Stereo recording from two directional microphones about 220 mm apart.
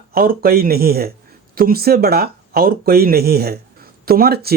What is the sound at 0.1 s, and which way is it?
Speech, 40° right (ahead or behind).